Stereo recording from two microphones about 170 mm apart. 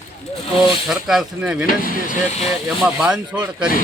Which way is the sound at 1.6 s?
55° left (ahead or behind).